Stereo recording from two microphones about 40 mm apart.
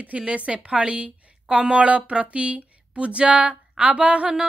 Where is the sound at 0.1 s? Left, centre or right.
Right.